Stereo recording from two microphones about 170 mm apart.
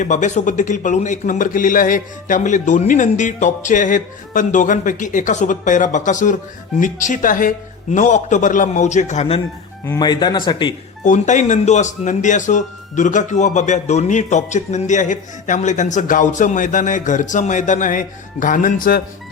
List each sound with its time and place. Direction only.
0.0 s a man's voice: 45° left (ahead or behind)
9.8 s speech: 20° left (ahead or behind)
11.0 s a man's voice: 45° left (ahead or behind)